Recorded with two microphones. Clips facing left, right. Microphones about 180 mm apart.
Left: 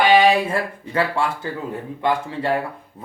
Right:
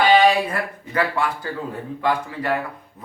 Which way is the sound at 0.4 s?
30° left (ahead or behind).